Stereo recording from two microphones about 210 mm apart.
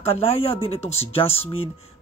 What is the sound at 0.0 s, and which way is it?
Speech, 30° left (ahead or behind).